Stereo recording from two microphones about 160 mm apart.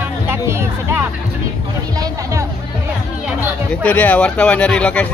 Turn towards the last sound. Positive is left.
turn(degrees=10)  # may be behind; listen again after turning